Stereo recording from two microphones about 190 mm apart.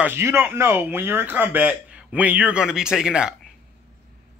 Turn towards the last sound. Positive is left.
turn(degrees=-5)  # may be behind; listen again after turning